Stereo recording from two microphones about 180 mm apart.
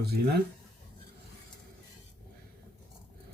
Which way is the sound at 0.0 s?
60° right (ahead or behind).